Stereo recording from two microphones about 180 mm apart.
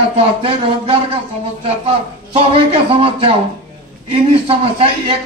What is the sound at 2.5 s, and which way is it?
A man's voice, 30° right (ahead or behind).